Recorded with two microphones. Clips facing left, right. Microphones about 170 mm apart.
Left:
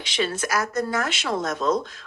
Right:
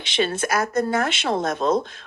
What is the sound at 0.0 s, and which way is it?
A woman's voice, 25° right (ahead or behind).